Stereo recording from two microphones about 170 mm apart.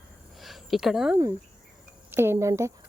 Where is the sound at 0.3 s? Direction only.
Centre (ahead or behind).